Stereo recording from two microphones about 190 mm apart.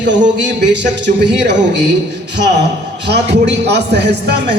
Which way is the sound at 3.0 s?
60° right (ahead or behind).